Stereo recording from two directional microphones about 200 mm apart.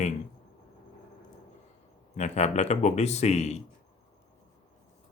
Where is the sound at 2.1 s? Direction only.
35° left (ahead or behind).